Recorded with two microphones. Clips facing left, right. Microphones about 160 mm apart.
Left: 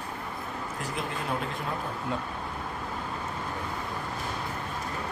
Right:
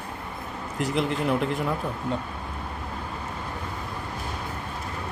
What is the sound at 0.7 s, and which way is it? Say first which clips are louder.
Speech: right 11 dB; 75° right (ahead or behind).